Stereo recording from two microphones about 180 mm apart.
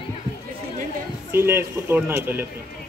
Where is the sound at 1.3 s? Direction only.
15° right (ahead or behind).